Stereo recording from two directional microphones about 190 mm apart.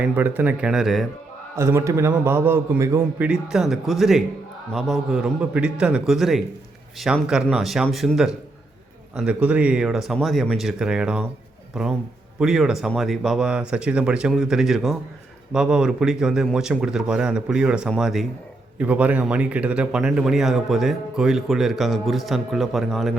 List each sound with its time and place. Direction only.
0.0 s a man's voice: 10° right (ahead or behind)
1.5 s a man's voice: 15° right (ahead or behind)
3.2 s a man's voice: 5° right (ahead or behind)